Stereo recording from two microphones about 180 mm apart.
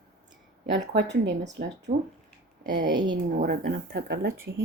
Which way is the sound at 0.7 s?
70° right (ahead or behind).